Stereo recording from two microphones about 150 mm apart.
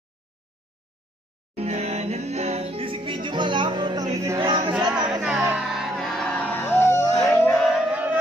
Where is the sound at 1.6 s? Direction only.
45° right (ahead or behind); by 4.0 s 30° right (ahead or behind).